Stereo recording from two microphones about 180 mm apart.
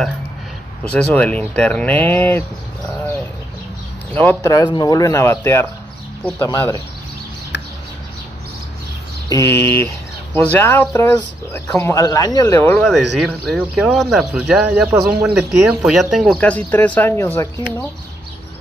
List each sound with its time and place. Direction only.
0.9 s speech: 5° left (ahead or behind)
4.1 s speech: 10° left (ahead or behind)
9.3 s speech: 15° left (ahead or behind); by 15.3 s 15° right (ahead or behind)
15.3 s speech: centre (ahead or behind)